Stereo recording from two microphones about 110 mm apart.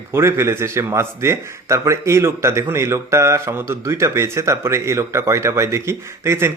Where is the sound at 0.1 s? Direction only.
25° right (ahead or behind).